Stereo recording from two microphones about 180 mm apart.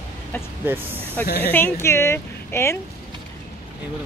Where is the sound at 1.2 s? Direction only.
60° left (ahead or behind).